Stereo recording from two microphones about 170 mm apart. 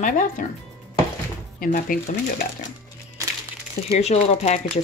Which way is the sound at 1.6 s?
50° left (ahead or behind).